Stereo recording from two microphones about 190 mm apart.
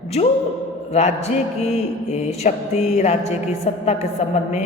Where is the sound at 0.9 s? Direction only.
35° left (ahead or behind).